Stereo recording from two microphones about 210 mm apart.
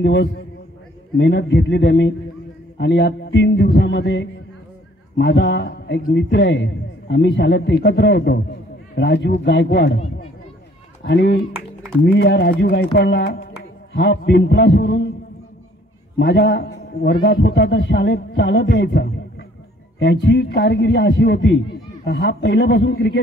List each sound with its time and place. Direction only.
0.0 s a man's voice: 55° left (ahead or behind)
11.1 s a man's voice: 55° left (ahead or behind)
16.2 s a man's voice: 50° left (ahead or behind)